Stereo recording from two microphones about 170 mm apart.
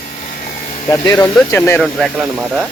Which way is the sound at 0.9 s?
15° left (ahead or behind).